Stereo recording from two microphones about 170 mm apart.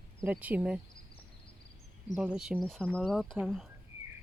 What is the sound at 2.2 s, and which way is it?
Speech, 5° right (ahead or behind).